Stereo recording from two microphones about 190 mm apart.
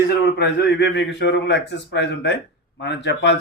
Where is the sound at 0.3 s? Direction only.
60° left (ahead or behind).